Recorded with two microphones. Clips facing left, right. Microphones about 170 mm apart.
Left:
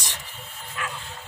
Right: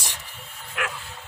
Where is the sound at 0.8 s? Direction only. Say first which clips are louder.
Right 3 dB; 80° right.